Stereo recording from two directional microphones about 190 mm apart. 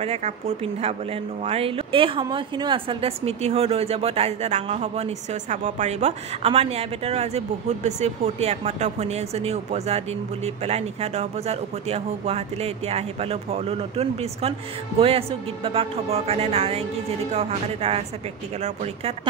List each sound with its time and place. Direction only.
0.0 s a woman's voice: 35° right (ahead or behind)
1.4 s a woman's voice: 30° right (ahead or behind)